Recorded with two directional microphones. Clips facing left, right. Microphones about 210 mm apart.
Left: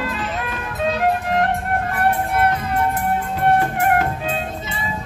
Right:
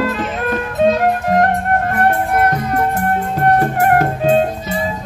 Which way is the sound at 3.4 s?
45° right (ahead or behind).